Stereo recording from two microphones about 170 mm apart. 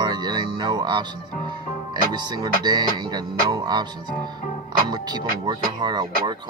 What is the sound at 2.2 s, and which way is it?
Speech, 25° right (ahead or behind).